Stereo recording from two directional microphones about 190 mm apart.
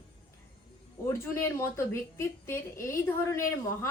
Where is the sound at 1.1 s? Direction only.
15° left (ahead or behind).